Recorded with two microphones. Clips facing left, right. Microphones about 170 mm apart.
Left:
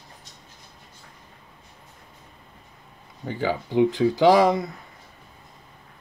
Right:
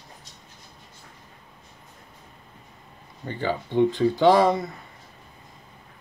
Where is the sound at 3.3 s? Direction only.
5° left (ahead or behind).